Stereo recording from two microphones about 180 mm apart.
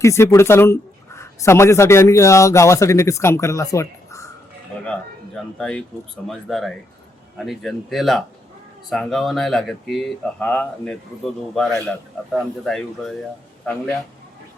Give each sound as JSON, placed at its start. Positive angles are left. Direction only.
{"t": 0.0, "sound": "speech", "side_deg": 15}
{"t": 4.9, "sound": "speech", "side_deg": 5}